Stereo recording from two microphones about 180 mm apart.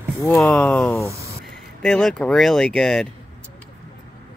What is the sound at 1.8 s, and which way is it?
Speech, 5° left (ahead or behind).